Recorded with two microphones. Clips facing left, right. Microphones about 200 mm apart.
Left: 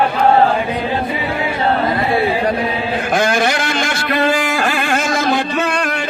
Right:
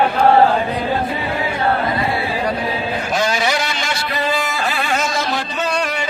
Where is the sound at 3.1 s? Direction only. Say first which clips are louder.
Left 3 dB; 55° left (ahead or behind).